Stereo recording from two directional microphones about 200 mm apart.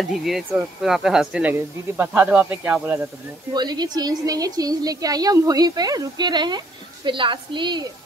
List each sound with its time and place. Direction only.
0.0 s speech: centre (ahead or behind)
3.5 s a woman's voice: 20° right (ahead or behind)